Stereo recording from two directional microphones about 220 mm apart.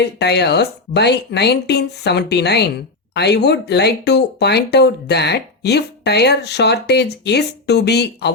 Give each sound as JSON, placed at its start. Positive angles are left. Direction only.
{"t": 0.0, "sound": "speech", "side_deg": 50}